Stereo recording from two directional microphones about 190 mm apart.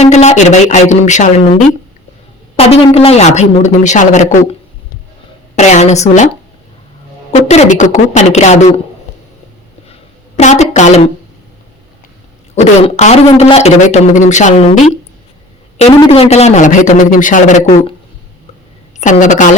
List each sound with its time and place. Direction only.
0.0 s a man's voice: 35° left (ahead or behind)
5.5 s a man's voice: 35° left (ahead or behind)
7.5 s a man's voice: 40° left (ahead or behind)
10.3 s a woman's voice: 35° left (ahead or behind)
12.5 s a man's voice: 35° left (ahead or behind)
15.8 s a man's voice: 30° left (ahead or behind)
18.9 s a woman's voice: 40° left (ahead or behind)